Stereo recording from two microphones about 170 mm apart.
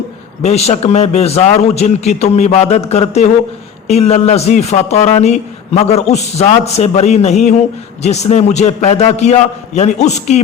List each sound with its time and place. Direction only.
0.4 s speech: 40° left (ahead or behind)